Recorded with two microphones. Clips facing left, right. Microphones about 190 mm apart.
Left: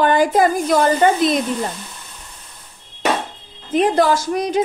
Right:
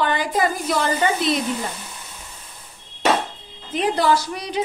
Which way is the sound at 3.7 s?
50° left (ahead or behind).